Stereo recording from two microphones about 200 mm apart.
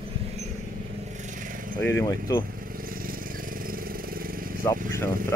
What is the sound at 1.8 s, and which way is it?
Speech, 10° left (ahead or behind).